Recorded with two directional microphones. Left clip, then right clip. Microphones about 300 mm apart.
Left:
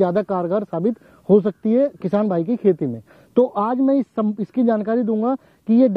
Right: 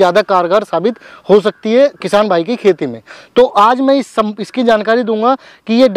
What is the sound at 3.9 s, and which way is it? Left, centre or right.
Speech, centre.